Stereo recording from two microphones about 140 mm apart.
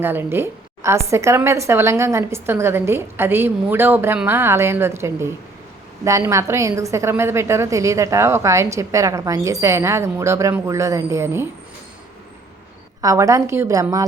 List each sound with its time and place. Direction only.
0.0 s a woman's voice: 15° right (ahead or behind)
13.0 s a woman's voice: 25° right (ahead or behind)